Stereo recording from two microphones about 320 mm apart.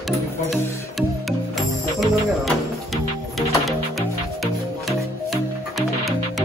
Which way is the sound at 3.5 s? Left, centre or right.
Centre.